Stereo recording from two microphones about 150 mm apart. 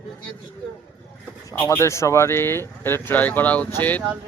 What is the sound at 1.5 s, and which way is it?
Speech, 10° left (ahead or behind).